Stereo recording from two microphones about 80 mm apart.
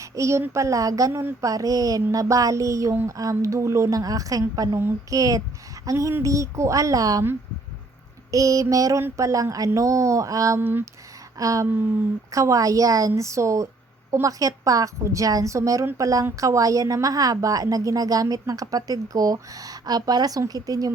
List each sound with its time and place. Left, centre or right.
0.2 s a woman's voice: right
8.3 s a woman's voice: right
10.6 s speech: right
11.3 s a woman's voice: right